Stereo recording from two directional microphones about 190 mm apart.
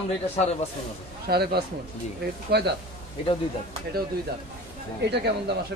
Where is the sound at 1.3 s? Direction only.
55° right (ahead or behind).